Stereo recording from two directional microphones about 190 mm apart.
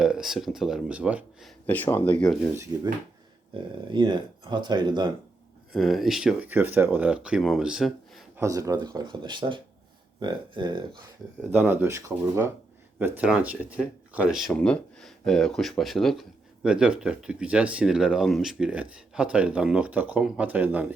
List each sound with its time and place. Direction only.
0.0 s speech: centre (ahead or behind)
1.6 s speech: 10° left (ahead or behind)
3.5 s speech: 25° right (ahead or behind)
5.7 s speech: centre (ahead or behind)
8.4 s speech: 15° right (ahead or behind)
11.5 s speech: 10° right (ahead or behind)